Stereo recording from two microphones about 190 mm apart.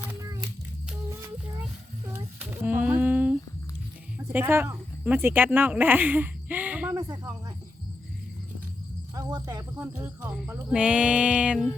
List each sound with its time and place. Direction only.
0.9 s music: 15° right (ahead or behind)
2.0 s a sound: 10° right (ahead or behind)
4.2 s speech: 10° right (ahead or behind)
9.1 s speech: 20° right (ahead or behind)
9.7 s music: 10° right (ahead or behind)